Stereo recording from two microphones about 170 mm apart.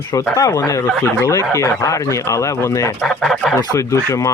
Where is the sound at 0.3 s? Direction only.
20° left (ahead or behind).